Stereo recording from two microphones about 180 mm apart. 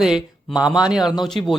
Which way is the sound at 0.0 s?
Centre (ahead or behind).